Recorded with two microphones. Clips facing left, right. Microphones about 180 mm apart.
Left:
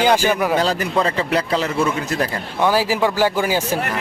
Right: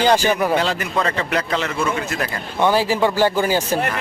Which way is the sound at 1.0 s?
30° left (ahead or behind).